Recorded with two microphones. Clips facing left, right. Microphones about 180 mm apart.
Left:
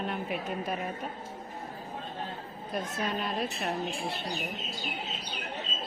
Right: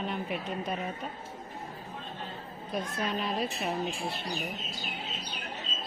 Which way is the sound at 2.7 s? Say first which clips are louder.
Even; centre (ahead or behind).